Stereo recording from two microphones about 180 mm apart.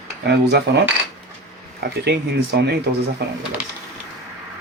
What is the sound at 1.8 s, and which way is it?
Speech, 65° right (ahead or behind).